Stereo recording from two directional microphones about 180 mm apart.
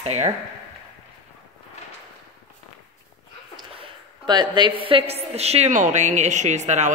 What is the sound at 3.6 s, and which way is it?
A woman's voice, 25° right (ahead or behind).